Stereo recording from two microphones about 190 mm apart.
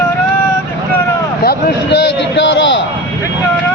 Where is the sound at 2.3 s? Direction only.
75° left (ahead or behind).